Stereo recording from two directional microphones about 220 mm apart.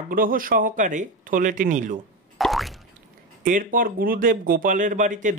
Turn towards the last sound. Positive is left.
turn(degrees=-35)  # may be behind; listen again after turning